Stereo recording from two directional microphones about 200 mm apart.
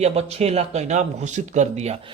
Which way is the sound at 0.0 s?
35° right (ahead or behind).